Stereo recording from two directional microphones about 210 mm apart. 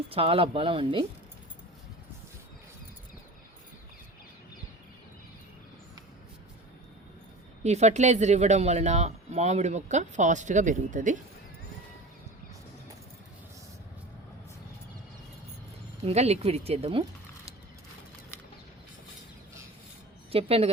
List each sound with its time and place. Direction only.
0.1 s speech: 25° right (ahead or behind)
7.6 s speech: 30° right (ahead or behind)
16.0 s speech: 30° right (ahead or behind)
20.3 s speech: 25° right (ahead or behind)